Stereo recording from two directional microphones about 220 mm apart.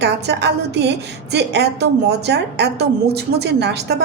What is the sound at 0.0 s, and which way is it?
A woman's voice, 50° right (ahead or behind).